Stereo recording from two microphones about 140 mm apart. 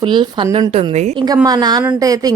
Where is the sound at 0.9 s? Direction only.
55° right (ahead or behind).